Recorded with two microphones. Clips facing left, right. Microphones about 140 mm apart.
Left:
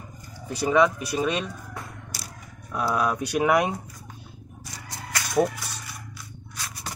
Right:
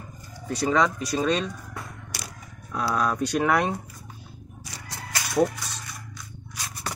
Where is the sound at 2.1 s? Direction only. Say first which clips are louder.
Right 5 dB; 65° right (ahead or behind).